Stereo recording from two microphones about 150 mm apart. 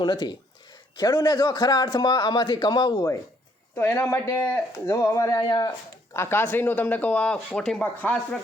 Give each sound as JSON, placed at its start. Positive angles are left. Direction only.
{"t": 0.0, "sound": "a man's voice", "side_deg": 30}
{"t": 6.1, "sound": "speech", "side_deg": 15}